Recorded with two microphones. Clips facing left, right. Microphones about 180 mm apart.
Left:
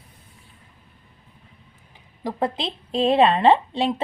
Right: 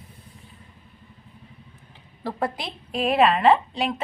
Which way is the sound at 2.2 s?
25° left (ahead or behind).